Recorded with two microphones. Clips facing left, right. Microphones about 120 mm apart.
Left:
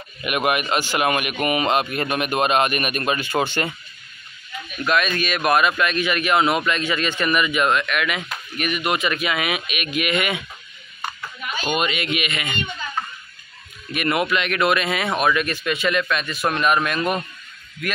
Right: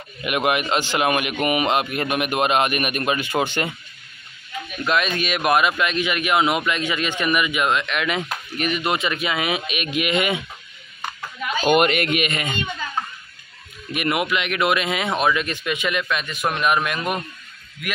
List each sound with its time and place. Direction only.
0.2 s speech: 20° right (ahead or behind)
4.8 s speech: 20° right (ahead or behind)
11.6 s speech: 60° right (ahead or behind); by 12.5 s 40° right (ahead or behind)
13.9 s speech: 15° right (ahead or behind)